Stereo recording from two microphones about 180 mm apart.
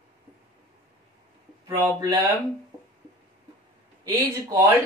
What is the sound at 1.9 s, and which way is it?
Speech, 20° right (ahead or behind).